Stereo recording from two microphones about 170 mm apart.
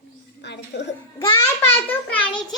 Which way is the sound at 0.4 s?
90° left.